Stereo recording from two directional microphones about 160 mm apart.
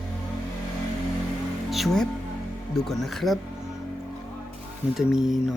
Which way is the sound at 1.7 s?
Centre (ahead or behind).